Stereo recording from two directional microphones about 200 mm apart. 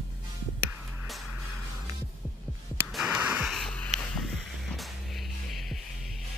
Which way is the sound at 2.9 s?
5° right (ahead or behind).